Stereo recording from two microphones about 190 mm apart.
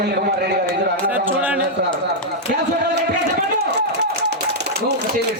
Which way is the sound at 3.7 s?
60° right (ahead or behind).